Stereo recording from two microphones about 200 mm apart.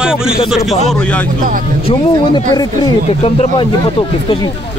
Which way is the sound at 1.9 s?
20° left (ahead or behind).